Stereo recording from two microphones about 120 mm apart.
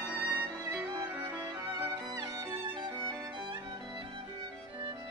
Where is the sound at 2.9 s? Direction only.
25° right (ahead or behind).